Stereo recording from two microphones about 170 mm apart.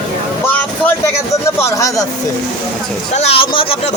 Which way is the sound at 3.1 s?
40° left (ahead or behind).